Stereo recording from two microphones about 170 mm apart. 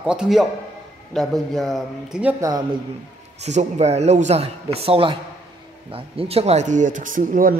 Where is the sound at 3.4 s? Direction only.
40° right (ahead or behind).